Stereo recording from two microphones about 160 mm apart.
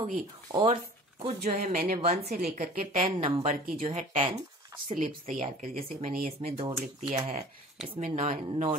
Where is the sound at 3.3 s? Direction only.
35° right (ahead or behind).